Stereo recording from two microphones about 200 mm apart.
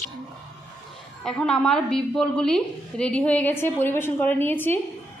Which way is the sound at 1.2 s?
5° left (ahead or behind).